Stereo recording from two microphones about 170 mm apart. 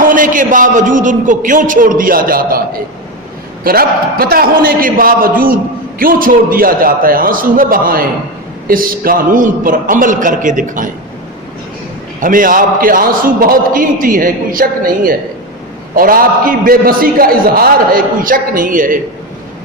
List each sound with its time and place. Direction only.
0.0 s a man's voice: 50° right (ahead or behind)
3.6 s a man's voice: 60° right (ahead or behind)
12.2 s a man's voice: 55° right (ahead or behind)